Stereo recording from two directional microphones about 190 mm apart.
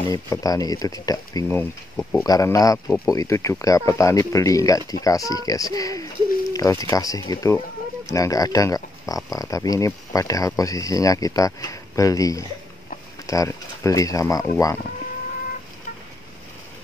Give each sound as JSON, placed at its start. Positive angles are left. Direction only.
{"t": 0.0, "sound": "speech", "side_deg": 20}